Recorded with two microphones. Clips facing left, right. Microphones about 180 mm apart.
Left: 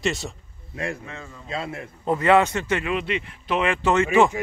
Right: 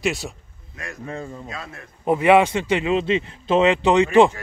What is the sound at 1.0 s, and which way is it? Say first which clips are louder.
Speech: right 7 dB; 35° right (ahead or behind).